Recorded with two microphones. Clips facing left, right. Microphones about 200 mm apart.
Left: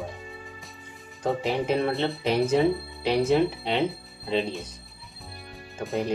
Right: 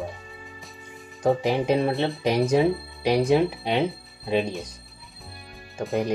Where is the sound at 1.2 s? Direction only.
15° right (ahead or behind).